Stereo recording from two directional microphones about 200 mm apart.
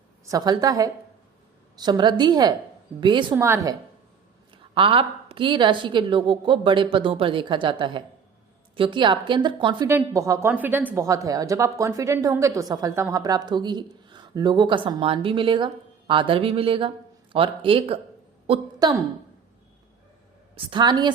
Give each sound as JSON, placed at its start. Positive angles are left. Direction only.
{"t": 0.3, "sound": "a woman's voice", "side_deg": -20}
{"t": 4.5, "sound": "a woman's voice", "side_deg": -25}
{"t": 20.6, "sound": "a woman's voice", "side_deg": -25}